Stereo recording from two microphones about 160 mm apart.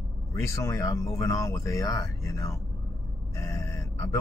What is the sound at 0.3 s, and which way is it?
Speech, 20° left (ahead or behind).